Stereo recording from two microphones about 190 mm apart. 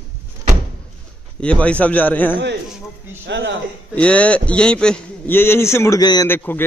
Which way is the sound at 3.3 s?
65° right (ahead or behind).